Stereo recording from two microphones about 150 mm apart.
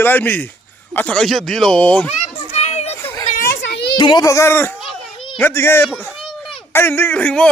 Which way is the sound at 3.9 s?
30° left (ahead or behind).